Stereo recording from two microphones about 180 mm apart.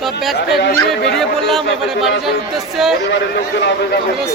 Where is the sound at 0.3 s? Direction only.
70° left (ahead or behind).